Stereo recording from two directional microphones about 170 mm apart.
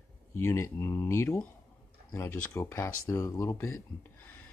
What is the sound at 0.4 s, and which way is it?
Speech, 15° left (ahead or behind).